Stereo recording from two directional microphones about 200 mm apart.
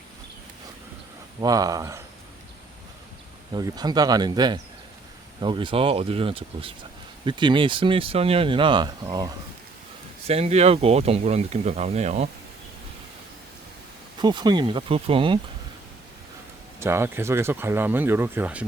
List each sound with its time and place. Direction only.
1.4 s speech: 20° right (ahead or behind)
3.5 s speech: 20° right (ahead or behind)
10.2 s speech: 30° right (ahead or behind)
14.2 s speech: 20° right (ahead or behind)
16.8 s speech: 10° right (ahead or behind)